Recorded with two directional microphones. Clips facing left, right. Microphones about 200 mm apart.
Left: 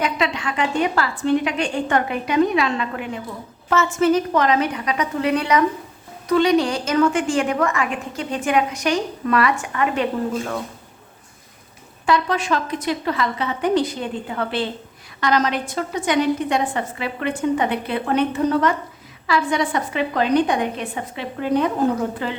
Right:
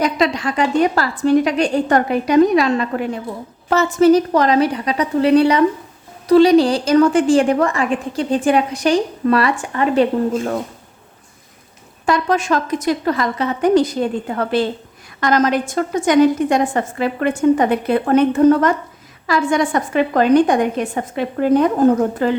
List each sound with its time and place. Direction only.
0.0 s a woman's voice: 40° right (ahead or behind)
12.0 s a woman's voice: 45° right (ahead or behind)